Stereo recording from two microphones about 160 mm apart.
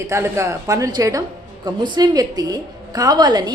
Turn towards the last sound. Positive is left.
turn(degrees=-25)  # may be behind; listen again after turning